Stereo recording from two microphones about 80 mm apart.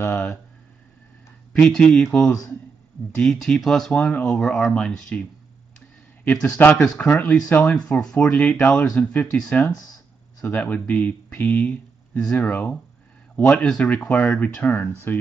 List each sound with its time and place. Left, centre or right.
0.0 s a sound: left
1.5 s speech: centre
3.2 s speech: centre
4.0 s speech: centre
6.2 s speech: left